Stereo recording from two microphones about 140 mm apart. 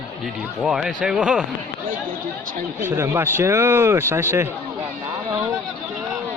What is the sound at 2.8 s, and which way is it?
Speech, 20° right (ahead or behind).